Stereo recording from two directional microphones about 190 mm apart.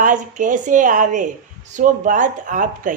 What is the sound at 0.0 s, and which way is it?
A woman's voice, 45° right (ahead or behind).